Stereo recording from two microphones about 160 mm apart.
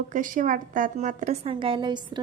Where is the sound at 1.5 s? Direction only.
30° right (ahead or behind).